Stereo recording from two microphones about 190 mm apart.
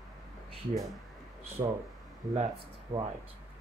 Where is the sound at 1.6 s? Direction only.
30° right (ahead or behind).